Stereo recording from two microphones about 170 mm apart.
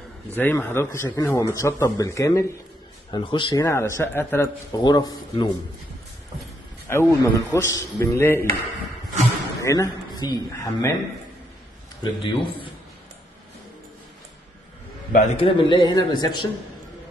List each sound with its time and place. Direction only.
0.3 s a man's voice: 10° left (ahead or behind)
6.9 s a man's voice: 15° left (ahead or behind)
9.6 s a man's voice: 20° left (ahead or behind)
12.0 s a man's voice: 30° left (ahead or behind)
15.1 s a man's voice: 35° left (ahead or behind)